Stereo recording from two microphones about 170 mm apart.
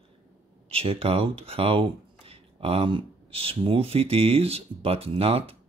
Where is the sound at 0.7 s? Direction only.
35° right (ahead or behind).